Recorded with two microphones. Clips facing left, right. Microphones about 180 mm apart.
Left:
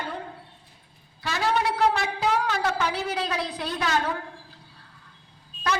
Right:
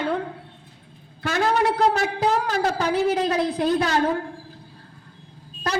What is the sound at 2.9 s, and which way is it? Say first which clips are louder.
A woman's voice: right 8 dB; 45° right (ahead or behind).